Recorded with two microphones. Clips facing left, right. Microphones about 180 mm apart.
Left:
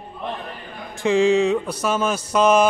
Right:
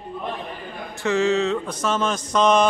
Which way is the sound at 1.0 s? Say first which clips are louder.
Left 4 dB; 15° left (ahead or behind).